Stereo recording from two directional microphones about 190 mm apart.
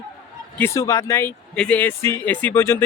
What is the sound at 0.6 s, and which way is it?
Speech, 15° left (ahead or behind).